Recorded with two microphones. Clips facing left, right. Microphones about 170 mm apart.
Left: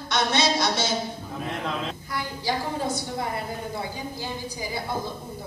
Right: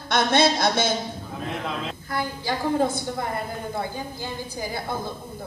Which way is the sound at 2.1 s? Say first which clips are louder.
Right 2 dB; 55° right (ahead or behind).